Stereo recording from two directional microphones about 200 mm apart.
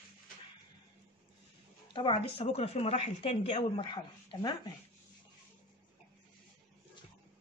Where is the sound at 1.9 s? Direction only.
25° left (ahead or behind).